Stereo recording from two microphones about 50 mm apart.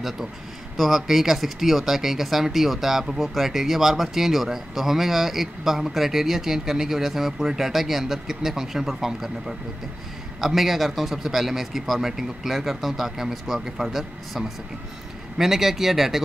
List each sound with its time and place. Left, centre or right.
0.7 s speech: centre